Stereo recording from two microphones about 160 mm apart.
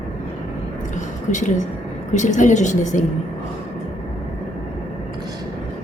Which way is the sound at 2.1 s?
50° left (ahead or behind).